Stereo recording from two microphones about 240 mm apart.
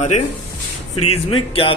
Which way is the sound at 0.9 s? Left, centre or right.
Left.